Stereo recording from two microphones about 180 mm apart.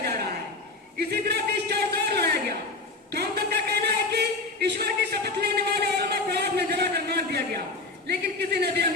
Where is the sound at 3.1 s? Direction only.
60° right (ahead or behind).